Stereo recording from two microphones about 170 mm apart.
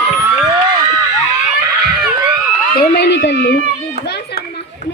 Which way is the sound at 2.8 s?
80° left.